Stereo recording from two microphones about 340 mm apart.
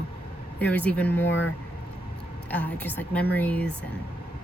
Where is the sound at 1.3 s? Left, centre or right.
Left.